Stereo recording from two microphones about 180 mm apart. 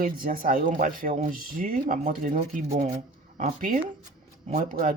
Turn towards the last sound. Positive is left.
turn(degrees=-50)  # may be behind; listen again after turning